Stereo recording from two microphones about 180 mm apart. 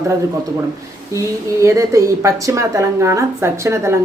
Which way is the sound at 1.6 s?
15° right (ahead or behind).